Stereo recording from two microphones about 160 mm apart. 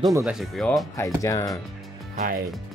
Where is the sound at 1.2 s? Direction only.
20° left (ahead or behind).